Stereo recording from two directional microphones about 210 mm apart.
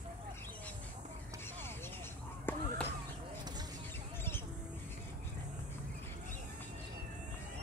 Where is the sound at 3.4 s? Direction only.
20° right (ahead or behind).